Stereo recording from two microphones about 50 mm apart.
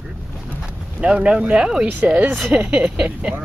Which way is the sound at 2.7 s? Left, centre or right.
Centre.